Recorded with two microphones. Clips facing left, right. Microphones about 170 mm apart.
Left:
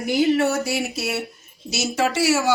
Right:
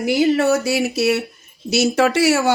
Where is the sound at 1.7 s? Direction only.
60° right (ahead or behind).